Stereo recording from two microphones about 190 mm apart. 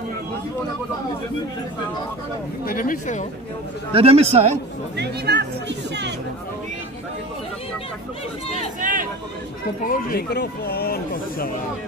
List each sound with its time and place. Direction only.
2.6 s speech: 50° left (ahead or behind)
3.9 s a man's voice: 30° right (ahead or behind)
4.9 s speech: 60° right (ahead or behind)
8.8 s speech: 45° right (ahead or behind)
9.8 s speech: 50° left (ahead or behind)